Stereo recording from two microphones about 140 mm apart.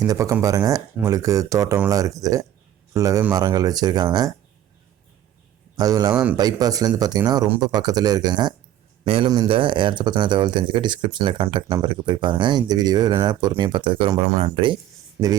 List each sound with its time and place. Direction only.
0.0 s speech: 25° right (ahead or behind)
5.7 s speech: 25° right (ahead or behind)
14.3 s speech: 45° right (ahead or behind)